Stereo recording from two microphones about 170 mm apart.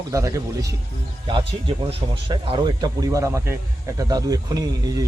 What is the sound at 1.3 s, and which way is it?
Speech, 30° right (ahead or behind).